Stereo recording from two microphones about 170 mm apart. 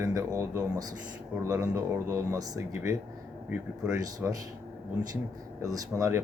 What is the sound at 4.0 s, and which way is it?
Speech, 20° right (ahead or behind).